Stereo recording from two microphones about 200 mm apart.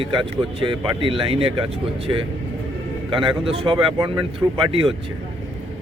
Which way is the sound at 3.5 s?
25° right (ahead or behind).